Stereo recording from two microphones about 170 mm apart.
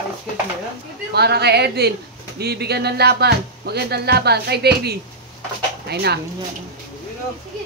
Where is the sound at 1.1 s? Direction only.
75° right (ahead or behind).